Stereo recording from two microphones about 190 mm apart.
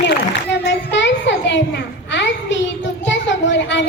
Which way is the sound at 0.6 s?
70° left (ahead or behind).